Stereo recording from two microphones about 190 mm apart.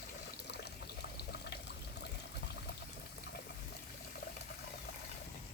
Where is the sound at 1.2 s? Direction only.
55° left (ahead or behind).